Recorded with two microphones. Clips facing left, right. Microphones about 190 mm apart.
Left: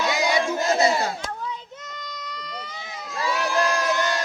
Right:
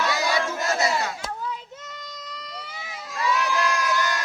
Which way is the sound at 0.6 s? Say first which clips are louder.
Left 4 dB; 30° left (ahead or behind).